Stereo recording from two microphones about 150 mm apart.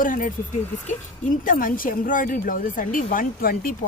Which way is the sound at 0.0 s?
65° left (ahead or behind).